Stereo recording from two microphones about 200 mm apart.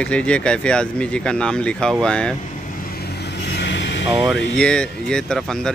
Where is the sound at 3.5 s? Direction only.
60° left (ahead or behind).